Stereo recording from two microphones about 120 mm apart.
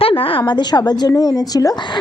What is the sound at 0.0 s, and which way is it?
A woman's voice, 50° left (ahead or behind).